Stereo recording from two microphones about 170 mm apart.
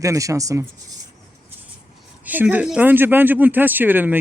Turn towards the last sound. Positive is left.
turn(degrees=-10)  # may be behind; listen again after turning